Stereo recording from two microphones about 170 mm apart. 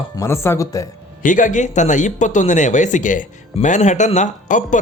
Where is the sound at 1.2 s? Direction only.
50° left (ahead or behind).